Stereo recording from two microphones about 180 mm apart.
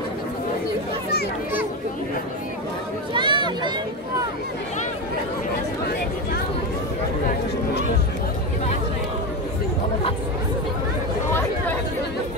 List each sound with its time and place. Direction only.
3.1 s speech: 25° right (ahead or behind)